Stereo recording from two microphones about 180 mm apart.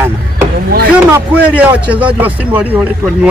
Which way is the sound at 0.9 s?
10° right (ahead or behind).